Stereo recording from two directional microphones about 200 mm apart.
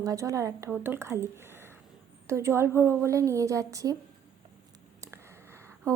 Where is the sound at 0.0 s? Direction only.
15° right (ahead or behind).